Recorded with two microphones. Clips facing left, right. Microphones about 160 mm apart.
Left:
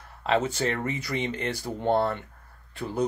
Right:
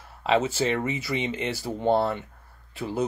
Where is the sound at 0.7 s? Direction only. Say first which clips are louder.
Right 2 dB; 20° right (ahead or behind).